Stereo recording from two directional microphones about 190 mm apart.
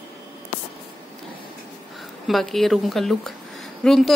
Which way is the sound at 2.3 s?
Centre (ahead or behind).